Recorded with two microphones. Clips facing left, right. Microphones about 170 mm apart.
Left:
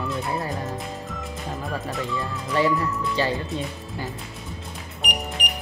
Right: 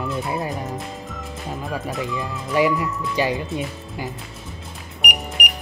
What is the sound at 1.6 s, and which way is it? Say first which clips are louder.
Speech: right 3 dB; centre (ahead or behind).